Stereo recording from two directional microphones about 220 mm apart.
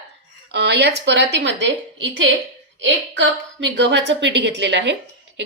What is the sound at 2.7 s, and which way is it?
A woman's voice, 55° right (ahead or behind).